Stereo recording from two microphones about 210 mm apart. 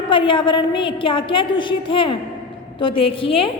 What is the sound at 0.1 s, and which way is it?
A woman's voice, 25° left (ahead or behind).